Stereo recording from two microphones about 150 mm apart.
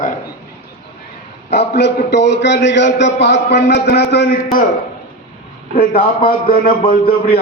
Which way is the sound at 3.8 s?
90° left.